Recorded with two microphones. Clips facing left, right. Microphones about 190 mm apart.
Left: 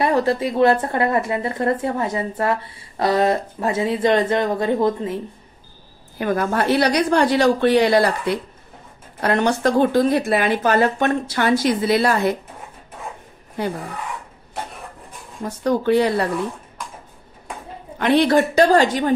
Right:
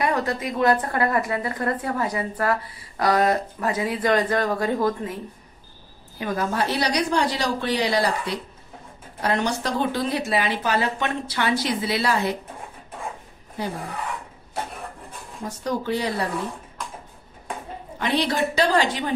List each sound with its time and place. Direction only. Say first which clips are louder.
0.0 s a woman's voice: left 6 dB; 30° left (ahead or behind)
6.1 s a woman's voice: left 5 dB; 60° left (ahead or behind)
15.6 s a woman's voice: left 8 dB; 60° left (ahead or behind)
17.9 s speech: left 8 dB; 55° left (ahead or behind)